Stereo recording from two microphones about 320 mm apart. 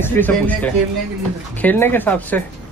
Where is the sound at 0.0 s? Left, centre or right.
Centre.